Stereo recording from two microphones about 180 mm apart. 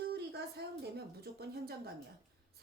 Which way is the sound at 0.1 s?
65° right (ahead or behind).